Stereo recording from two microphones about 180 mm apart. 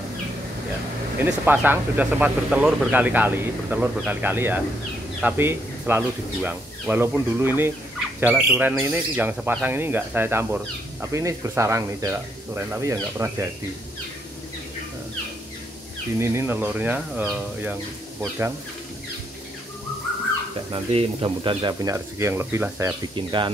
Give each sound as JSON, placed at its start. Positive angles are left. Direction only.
{"t": 1.2, "sound": "speech", "side_deg": -10}
{"t": 16.2, "sound": "speech", "side_deg": -15}
{"t": 20.7, "sound": "speech", "side_deg": -30}
{"t": 23.1, "sound": "speech", "side_deg": -25}